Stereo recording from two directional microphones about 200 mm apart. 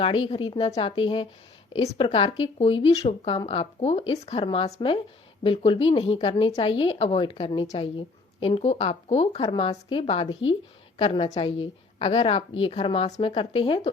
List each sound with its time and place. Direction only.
0.3 s speech: 25° left (ahead or behind)